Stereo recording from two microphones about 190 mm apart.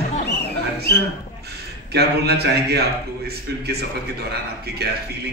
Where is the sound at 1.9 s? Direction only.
60° right (ahead or behind).